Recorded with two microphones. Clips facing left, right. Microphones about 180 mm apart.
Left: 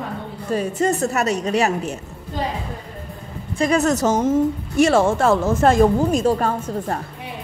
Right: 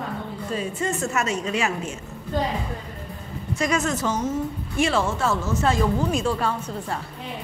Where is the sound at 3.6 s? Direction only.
35° left (ahead or behind).